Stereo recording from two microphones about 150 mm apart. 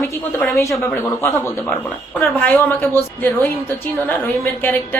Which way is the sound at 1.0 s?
15° left (ahead or behind).